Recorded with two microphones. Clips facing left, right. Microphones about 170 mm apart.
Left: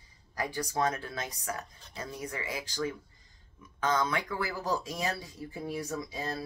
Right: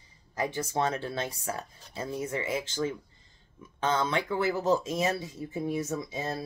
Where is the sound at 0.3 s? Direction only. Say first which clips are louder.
Right 3 dB; 25° right (ahead or behind).